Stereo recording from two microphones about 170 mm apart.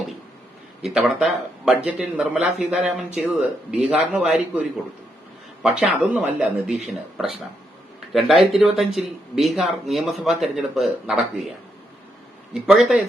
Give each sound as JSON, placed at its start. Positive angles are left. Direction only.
{"t": 0.8, "sound": "a man's voice", "side_deg": 0}
{"t": 5.8, "sound": "speech", "side_deg": -10}
{"t": 12.6, "sound": "speech", "side_deg": -5}